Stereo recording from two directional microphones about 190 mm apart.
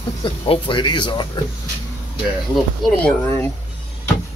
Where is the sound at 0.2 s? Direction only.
25° left (ahead or behind).